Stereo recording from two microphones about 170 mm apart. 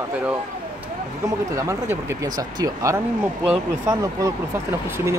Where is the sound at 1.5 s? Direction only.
20° right (ahead or behind).